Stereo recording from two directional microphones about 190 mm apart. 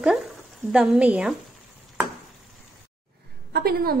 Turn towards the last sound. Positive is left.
turn(degrees=-55)  # may be behind; listen again after turning